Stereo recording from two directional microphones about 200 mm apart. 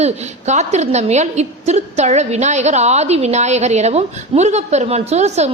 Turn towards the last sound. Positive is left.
turn(degrees=-35)  # may be behind; listen again after turning